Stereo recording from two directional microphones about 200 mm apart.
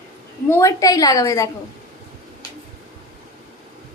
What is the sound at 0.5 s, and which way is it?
Speech, 15° left (ahead or behind).